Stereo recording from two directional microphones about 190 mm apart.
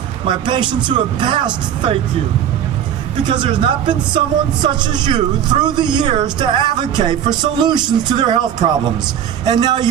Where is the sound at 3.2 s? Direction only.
25° right (ahead or behind).